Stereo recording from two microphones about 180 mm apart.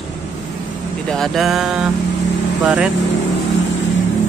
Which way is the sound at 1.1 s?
Centre (ahead or behind).